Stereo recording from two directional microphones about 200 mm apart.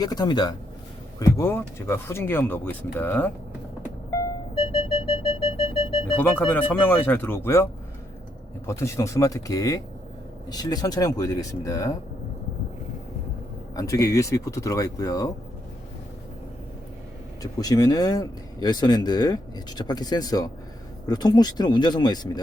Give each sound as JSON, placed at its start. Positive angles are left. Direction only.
{"t": 0.0, "sound": "speech", "side_deg": 20}
{"t": 4.5, "sound": "a sound", "side_deg": 30}
{"t": 6.8, "sound": "speech", "side_deg": 10}
{"t": 13.7, "sound": "speech", "side_deg": 15}
{"t": 17.4, "sound": "speech", "side_deg": 20}